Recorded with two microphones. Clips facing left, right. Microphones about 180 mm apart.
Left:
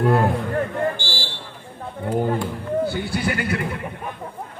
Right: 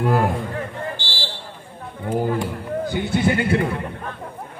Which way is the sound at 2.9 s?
20° right (ahead or behind).